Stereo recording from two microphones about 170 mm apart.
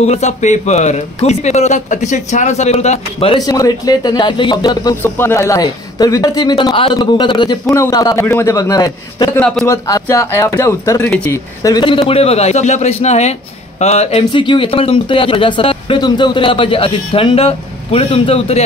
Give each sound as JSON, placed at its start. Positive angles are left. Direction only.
{"t": 0.0, "sound": "speech", "side_deg": 40}
{"t": 3.3, "sound": "a man's voice", "side_deg": 20}
{"t": 5.0, "sound": "a man's voice", "side_deg": 15}
{"t": 11.7, "sound": "speech", "side_deg": 30}